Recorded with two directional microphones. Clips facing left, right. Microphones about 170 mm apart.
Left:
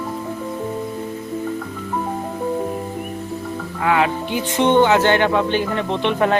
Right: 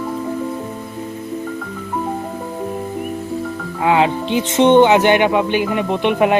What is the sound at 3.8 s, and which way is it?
Speech, 20° right (ahead or behind).